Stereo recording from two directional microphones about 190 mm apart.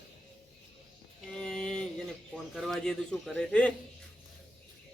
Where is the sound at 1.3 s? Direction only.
5° left (ahead or behind).